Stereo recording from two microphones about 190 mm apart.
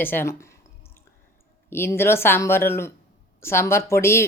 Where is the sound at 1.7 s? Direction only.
10° left (ahead or behind).